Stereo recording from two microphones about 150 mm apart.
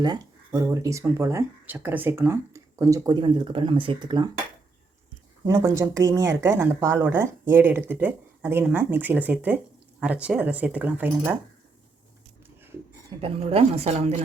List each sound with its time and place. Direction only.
0.0 s speech: 25° right (ahead or behind)
5.5 s speech: 20° right (ahead or behind)
13.1 s speech: 40° right (ahead or behind)